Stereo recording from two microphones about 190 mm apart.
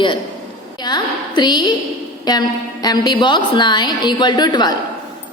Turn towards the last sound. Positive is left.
turn(degrees=20)  # may be behind; listen again after turning